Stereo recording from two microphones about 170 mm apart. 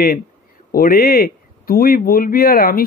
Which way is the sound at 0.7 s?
60° left (ahead or behind).